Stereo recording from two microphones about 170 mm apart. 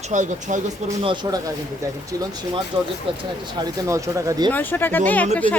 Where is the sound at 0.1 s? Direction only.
45° right (ahead or behind).